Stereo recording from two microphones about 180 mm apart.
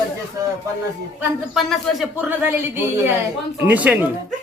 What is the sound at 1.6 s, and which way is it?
Speech, centre (ahead or behind).